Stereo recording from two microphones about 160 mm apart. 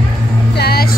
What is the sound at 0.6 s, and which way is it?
Music, 80° left.